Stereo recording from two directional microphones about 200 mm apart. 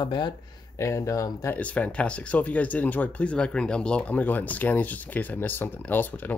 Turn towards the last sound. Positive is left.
turn(degrees=10)  # may be behind; listen again after turning